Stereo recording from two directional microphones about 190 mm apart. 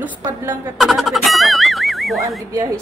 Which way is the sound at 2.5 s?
15° right (ahead or behind).